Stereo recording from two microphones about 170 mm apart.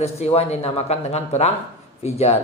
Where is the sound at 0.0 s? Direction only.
35° left (ahead or behind).